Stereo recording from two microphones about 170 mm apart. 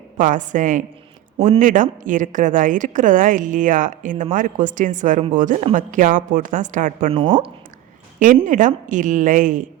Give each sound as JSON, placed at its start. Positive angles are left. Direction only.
{"t": 0.2, "sound": "a woman's voice", "side_deg": -50}
{"t": 7.1, "sound": "speech", "side_deg": -30}
{"t": 8.4, "sound": "a woman's voice", "side_deg": -50}